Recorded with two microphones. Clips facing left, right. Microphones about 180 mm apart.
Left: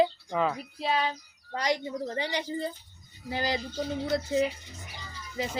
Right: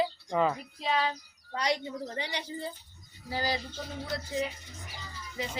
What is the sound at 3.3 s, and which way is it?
Speech, 20° left (ahead or behind).